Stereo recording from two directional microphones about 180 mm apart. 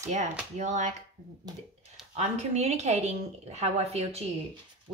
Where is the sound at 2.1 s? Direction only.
35° right (ahead or behind).